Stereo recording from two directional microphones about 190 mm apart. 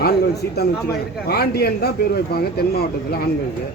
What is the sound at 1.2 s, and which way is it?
Speech, 55° left (ahead or behind).